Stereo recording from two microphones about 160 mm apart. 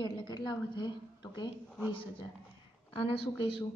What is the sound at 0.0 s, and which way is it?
A woman's voice, 30° left (ahead or behind).